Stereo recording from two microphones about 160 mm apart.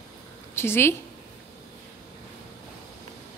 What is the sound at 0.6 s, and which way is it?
Speech, 15° left (ahead or behind).